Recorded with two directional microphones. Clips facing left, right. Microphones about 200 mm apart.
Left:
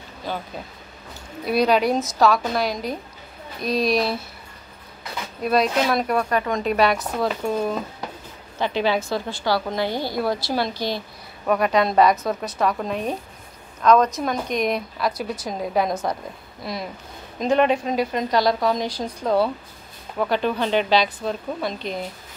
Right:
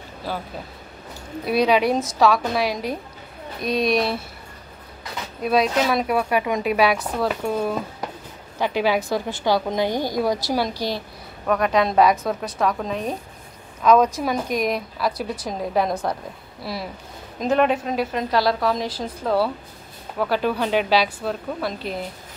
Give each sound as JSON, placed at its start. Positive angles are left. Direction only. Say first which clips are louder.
{"t": 0.3, "sound": "a woman's voice", "louder": "even", "side_deg": -5}
{"t": 5.4, "sound": "a woman's voice", "louder": "even", "side_deg": 0}
{"t": 10.7, "sound": "a woman's voice", "louder": "even", "side_deg": -35}
{"t": 11.4, "sound": "a woman's voice", "louder": "even", "side_deg": 5}